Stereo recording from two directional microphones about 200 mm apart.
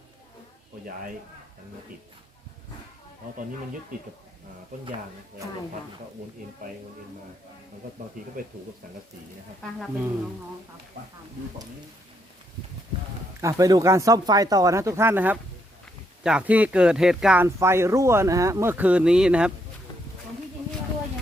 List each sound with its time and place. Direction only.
13.4 s speech: 15° right (ahead or behind)